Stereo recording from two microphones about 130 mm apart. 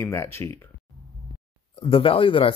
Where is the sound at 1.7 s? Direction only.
45° left (ahead or behind).